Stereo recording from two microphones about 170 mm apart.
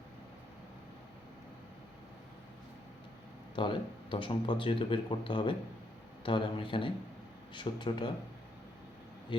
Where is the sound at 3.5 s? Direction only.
30° left (ahead or behind).